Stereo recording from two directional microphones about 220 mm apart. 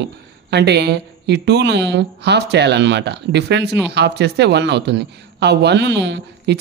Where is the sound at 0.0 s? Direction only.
50° right (ahead or behind).